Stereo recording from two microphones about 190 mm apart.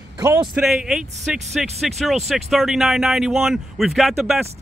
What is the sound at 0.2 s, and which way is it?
Speech, 15° right (ahead or behind).